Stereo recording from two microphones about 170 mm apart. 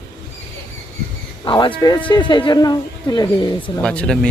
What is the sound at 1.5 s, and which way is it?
Speech, 30° left (ahead or behind).